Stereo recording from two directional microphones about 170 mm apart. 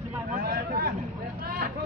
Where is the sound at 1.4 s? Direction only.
60° right (ahead or behind).